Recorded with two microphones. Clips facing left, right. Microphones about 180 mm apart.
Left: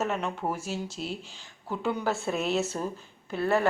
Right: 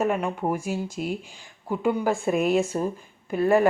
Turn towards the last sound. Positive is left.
turn(degrees=-15)  # may be behind; listen again after turning